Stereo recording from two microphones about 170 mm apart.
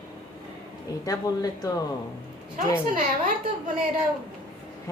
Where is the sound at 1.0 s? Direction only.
20° left (ahead or behind).